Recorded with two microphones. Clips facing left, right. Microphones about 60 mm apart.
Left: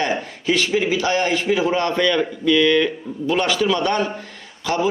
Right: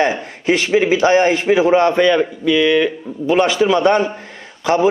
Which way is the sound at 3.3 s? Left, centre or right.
Right.